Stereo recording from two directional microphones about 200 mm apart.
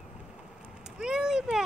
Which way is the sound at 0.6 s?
5° right (ahead or behind).